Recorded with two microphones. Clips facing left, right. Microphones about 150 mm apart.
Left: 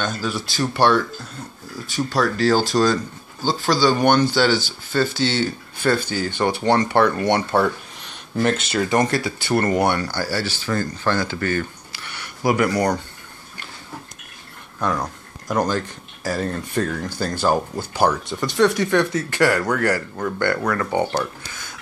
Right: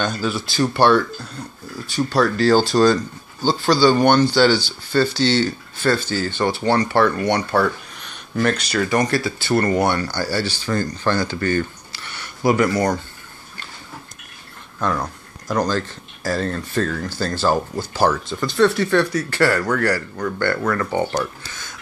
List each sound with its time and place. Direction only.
0.0 s speech: centre (ahead or behind); by 9.9 s 20° left (ahead or behind)
9.9 s speech: 5° left (ahead or behind)
11.4 s a sound: 5° left (ahead or behind)
12.4 s speech: 15° left (ahead or behind)
14.8 s speech: centre (ahead or behind)
16.3 s speech: 15° left (ahead or behind)